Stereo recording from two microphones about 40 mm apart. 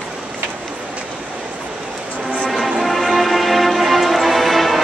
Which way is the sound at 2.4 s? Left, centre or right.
Centre.